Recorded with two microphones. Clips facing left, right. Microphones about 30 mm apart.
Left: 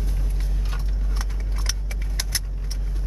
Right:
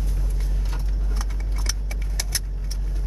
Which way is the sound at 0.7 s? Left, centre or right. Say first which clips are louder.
Even; left.